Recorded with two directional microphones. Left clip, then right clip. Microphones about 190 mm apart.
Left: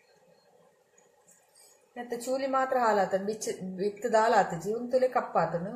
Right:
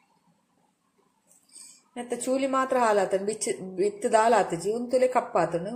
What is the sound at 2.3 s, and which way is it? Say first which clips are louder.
A woman's voice: right 3 dB; 45° right (ahead or behind).